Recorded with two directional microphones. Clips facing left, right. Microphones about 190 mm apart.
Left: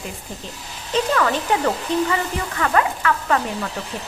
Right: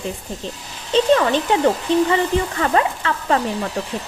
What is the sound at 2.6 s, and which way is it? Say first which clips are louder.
Speech: right 1 dB; 30° right (ahead or behind).